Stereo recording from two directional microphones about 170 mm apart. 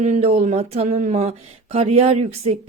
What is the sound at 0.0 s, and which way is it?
Speech, 40° right (ahead or behind).